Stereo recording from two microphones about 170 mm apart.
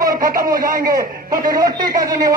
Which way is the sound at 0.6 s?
55° right (ahead or behind).